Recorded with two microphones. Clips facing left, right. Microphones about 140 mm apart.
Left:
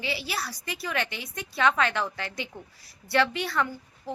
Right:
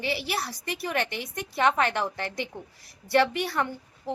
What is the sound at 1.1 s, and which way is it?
Speech, 50° right (ahead or behind).